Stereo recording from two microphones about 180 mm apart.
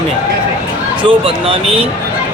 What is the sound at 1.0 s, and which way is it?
Speech, 30° right (ahead or behind).